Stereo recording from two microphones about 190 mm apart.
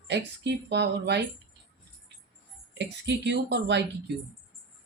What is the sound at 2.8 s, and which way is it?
Speech, 65° right (ahead or behind).